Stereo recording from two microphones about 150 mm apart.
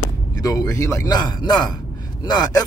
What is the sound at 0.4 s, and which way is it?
A man's voice, 25° left (ahead or behind).